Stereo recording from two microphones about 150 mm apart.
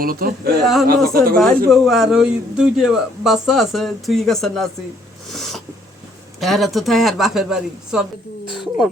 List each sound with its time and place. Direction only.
0.0 s speech: 75° right (ahead or behind)
0.6 s a man's voice: centre (ahead or behind)
0.9 s speech: 85° right
1.4 s a man's voice: centre (ahead or behind)
5.3 s cat: centre (ahead or behind)
6.4 s a man's voice: centre (ahead or behind)